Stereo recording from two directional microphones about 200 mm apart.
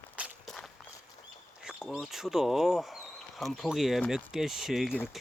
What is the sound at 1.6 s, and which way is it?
Speech, 5° right (ahead or behind).